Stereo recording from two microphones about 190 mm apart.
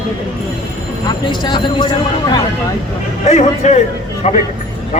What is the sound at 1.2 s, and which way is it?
Speech, 25° left (ahead or behind).